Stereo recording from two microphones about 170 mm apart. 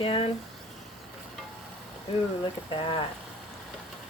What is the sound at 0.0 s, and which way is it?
Speech, 35° left (ahead or behind).